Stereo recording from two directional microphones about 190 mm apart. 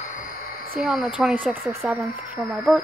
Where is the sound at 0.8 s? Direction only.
Centre (ahead or behind).